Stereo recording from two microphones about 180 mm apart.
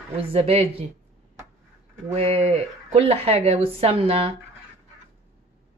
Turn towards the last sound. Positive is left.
turn(degrees=-35)  # may be behind; listen again after turning